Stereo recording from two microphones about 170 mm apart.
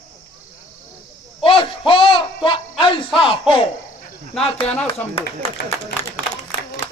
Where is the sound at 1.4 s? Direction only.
30° left (ahead or behind).